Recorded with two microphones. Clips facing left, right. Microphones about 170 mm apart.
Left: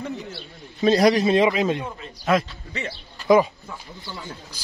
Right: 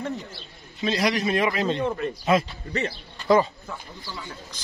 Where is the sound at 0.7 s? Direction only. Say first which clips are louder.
Left 7 dB; 40° left (ahead or behind); by 1.7 s 20° left (ahead or behind).